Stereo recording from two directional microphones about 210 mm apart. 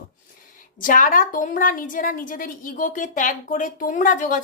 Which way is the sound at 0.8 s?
40° left (ahead or behind).